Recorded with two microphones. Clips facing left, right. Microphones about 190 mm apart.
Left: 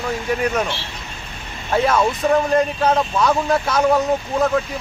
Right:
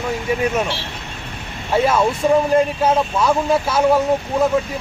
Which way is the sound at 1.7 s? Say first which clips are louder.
Right 1 dB; 5° right (ahead or behind).